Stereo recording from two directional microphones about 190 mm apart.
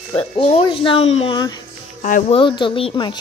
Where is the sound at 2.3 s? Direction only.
25° left (ahead or behind).